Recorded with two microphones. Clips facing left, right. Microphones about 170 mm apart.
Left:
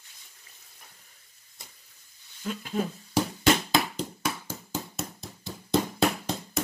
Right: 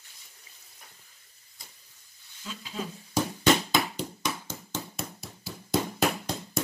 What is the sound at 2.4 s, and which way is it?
Speech, 55° left (ahead or behind).